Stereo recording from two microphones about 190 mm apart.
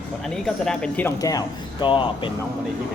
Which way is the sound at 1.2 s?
20° left (ahead or behind).